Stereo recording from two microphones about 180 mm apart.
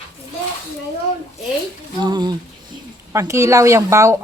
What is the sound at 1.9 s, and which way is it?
A woman's voice, 25° right (ahead or behind).